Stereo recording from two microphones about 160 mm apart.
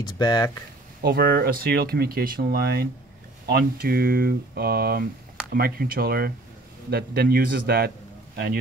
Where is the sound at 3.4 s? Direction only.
65° right (ahead or behind).